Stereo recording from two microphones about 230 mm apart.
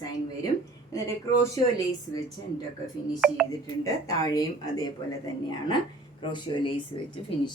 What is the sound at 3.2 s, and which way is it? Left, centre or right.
Speech, centre.